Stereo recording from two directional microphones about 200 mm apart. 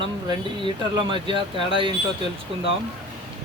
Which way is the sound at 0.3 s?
25° right (ahead or behind).